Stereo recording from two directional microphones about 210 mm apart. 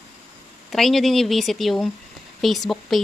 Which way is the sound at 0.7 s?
Centre (ahead or behind).